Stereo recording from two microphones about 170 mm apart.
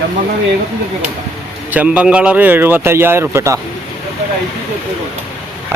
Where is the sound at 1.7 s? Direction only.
5° right (ahead or behind).